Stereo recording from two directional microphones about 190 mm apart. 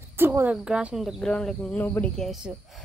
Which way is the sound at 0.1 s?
10° right (ahead or behind).